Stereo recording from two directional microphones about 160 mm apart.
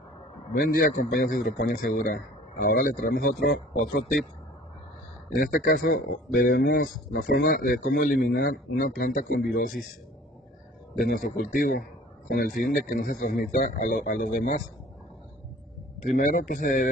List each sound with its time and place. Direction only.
0.5 s speech: 55° left (ahead or behind)
5.3 s speech: 60° left (ahead or behind)
11.1 s speech: 55° left (ahead or behind)
16.0 s speech: 55° left (ahead or behind)